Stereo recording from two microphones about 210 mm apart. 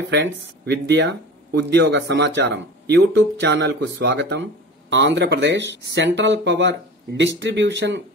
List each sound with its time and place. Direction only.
0.1 s speech: 55° right (ahead or behind)